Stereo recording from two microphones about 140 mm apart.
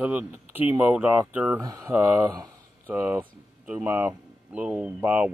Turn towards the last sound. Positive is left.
turn(degrees=-10)  # may be behind; listen again after turning